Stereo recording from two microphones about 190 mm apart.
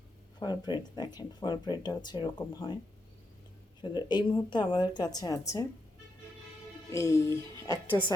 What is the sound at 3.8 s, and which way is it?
Speech, 20° left (ahead or behind).